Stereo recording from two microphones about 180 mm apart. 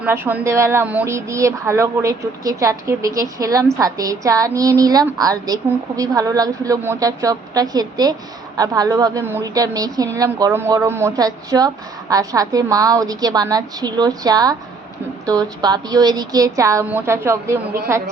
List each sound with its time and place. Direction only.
0.0 s a woman's voice: 10° right (ahead or behind)